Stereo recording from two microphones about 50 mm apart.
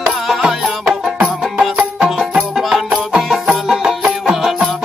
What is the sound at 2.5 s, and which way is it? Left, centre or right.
Music, centre.